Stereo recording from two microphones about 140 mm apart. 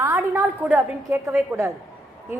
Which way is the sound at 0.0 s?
15° right (ahead or behind).